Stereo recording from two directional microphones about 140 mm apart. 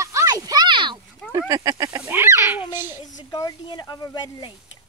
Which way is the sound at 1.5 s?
25° right (ahead or behind).